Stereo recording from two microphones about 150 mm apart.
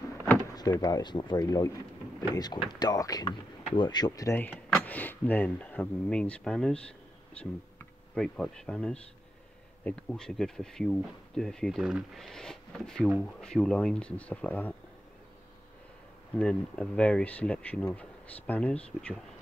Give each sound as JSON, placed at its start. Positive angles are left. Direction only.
{"t": 0.6, "sound": "speech", "side_deg": 25}
{"t": 4.4, "sound": "speech", "side_deg": 5}
{"t": 16.3, "sound": "speech", "side_deg": 5}